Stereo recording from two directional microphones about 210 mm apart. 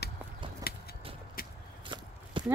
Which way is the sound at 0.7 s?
45° left (ahead or behind).